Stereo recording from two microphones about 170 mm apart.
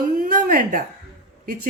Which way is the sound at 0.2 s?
55° right (ahead or behind).